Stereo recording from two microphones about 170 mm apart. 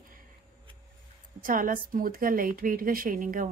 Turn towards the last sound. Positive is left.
turn(degrees=-50)  # may be behind; listen again after turning